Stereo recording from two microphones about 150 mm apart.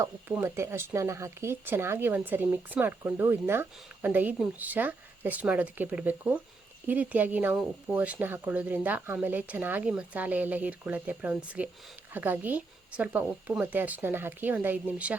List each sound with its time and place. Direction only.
0.0 s speech: 15° right (ahead or behind)